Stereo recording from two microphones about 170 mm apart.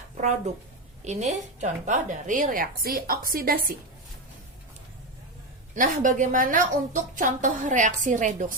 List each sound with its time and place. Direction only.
0.2 s a woman's voice: 45° right (ahead or behind)
5.7 s a woman's voice: 50° right (ahead or behind)